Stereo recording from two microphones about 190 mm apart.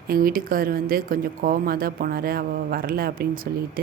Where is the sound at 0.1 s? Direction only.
50° right (ahead or behind).